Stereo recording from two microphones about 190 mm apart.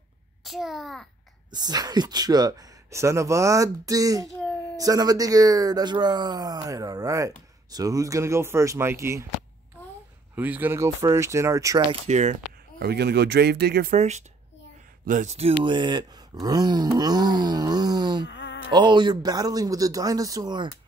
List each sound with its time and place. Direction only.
0.4 s a child's voice: centre (ahead or behind)
1.5 s speech: 20° right (ahead or behind)
10.3 s speech: 10° right (ahead or behind)
11.9 s speech: 35° right (ahead or behind)
12.7 s speech: 55° right (ahead or behind)
13.9 s speech: 35° right (ahead or behind); by 18.2 s 20° right (ahead or behind)
18.3 s a sound: 70° left (ahead or behind)
18.7 s speech: 25° right (ahead or behind)